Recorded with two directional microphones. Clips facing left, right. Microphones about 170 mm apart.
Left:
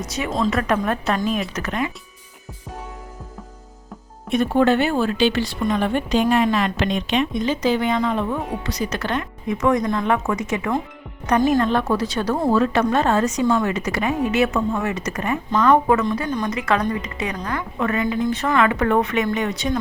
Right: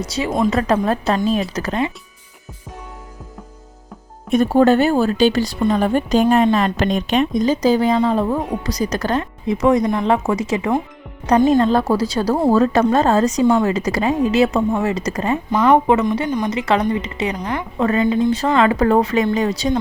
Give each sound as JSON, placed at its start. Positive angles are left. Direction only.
{"t": 0.0, "sound": "speech", "side_deg": -30}
{"t": 4.3, "sound": "speech", "side_deg": -40}
{"t": 15.5, "sound": "speech", "side_deg": -15}